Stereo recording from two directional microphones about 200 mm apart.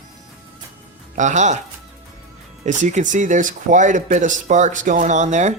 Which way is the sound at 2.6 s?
35° right (ahead or behind).